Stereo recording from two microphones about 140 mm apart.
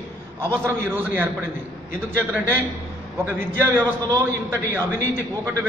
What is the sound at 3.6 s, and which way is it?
A man's voice, 15° right (ahead or behind).